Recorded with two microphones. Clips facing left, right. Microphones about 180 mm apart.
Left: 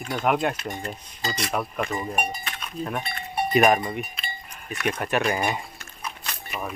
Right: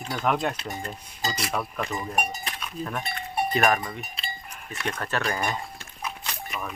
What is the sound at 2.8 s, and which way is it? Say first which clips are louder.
Speech: left 3 dB; 5° right (ahead or behind).